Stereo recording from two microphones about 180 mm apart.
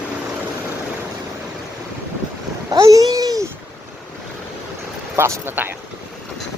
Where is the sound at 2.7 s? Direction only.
20° right (ahead or behind).